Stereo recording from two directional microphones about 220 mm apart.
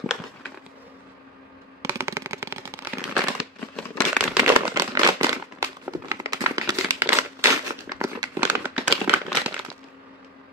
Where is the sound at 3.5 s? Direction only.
Centre (ahead or behind).